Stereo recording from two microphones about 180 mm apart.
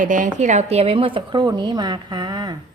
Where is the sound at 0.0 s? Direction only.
45° right (ahead or behind); by 2.6 s 25° right (ahead or behind).